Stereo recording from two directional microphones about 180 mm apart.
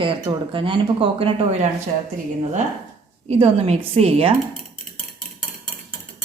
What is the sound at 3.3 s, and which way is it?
A woman's voice, 35° right (ahead or behind).